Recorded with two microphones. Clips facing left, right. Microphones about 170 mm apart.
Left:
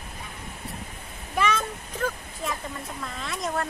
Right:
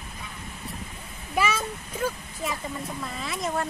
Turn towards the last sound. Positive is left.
turn(degrees=0)  # may be behind; listen again after turning